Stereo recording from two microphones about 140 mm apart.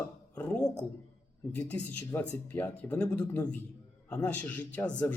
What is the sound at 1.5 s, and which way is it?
Speech, 10° left (ahead or behind).